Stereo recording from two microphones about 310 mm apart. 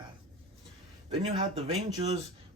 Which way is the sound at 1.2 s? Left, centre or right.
Centre.